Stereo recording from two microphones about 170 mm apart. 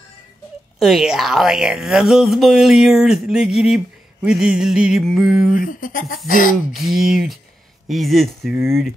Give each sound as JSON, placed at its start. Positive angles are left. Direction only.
{"t": 0.7, "sound": "speech", "side_deg": 0}
{"t": 5.6, "sound": "speech", "side_deg": 50}
{"t": 6.7, "sound": "speech", "side_deg": 0}